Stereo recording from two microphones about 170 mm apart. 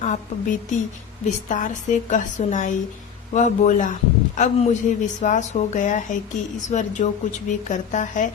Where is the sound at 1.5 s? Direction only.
45° left (ahead or behind).